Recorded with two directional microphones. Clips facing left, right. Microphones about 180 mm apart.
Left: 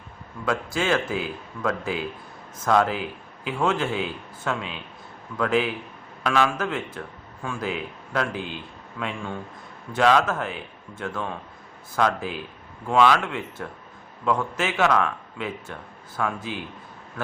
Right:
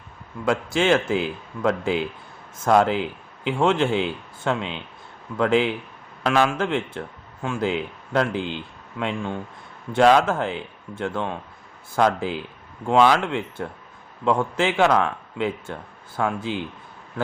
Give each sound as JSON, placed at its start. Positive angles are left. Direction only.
{"t": 0.4, "sound": "a man's voice", "side_deg": -25}